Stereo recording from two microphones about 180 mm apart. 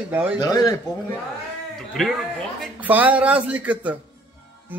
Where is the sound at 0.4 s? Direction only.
20° left (ahead or behind).